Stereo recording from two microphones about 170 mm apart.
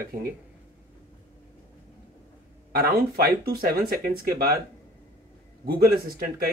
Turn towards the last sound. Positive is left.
turn(degrees=-65)  # may be behind; listen again after turning